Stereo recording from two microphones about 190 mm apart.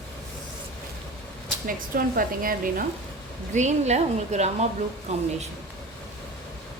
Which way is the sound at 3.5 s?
35° right (ahead or behind).